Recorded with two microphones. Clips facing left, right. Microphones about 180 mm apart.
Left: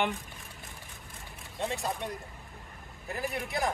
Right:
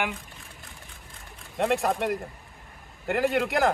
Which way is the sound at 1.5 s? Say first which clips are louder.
Right 9 dB; 65° right (ahead or behind).